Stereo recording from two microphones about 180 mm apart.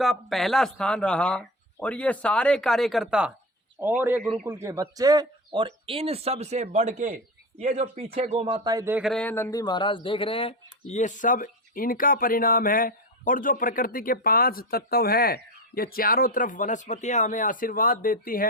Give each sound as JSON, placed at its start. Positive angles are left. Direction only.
{"t": 0.0, "sound": "speech", "side_deg": 0}
{"t": 4.2, "sound": "speech", "side_deg": 0}
{"t": 4.4, "sound": "speech", "side_deg": -15}
{"t": 8.5, "sound": "speech", "side_deg": -20}
{"t": 9.0, "sound": "speech", "side_deg": 5}